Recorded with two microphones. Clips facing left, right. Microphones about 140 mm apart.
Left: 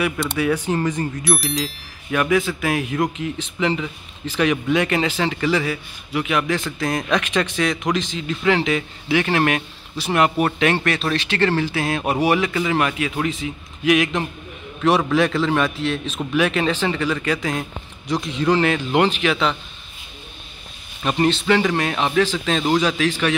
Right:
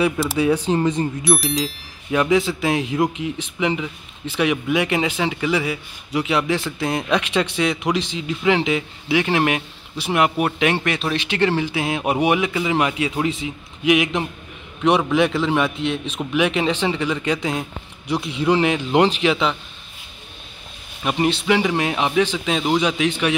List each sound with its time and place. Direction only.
0.2 s speech: 25° right (ahead or behind)
1.2 s speech: centre (ahead or behind)
2.0 s a man's voice: 20° right (ahead or behind)
21.0 s a man's voice: 10° right (ahead or behind)